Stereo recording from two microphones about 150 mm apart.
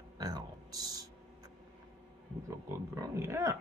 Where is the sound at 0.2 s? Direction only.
25° right (ahead or behind).